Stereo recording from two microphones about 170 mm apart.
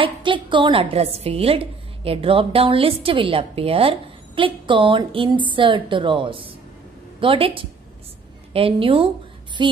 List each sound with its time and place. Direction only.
0.0 s a woman's voice: 30° right (ahead or behind)